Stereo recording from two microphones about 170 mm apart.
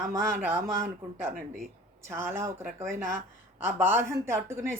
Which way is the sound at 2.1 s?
15° right (ahead or behind).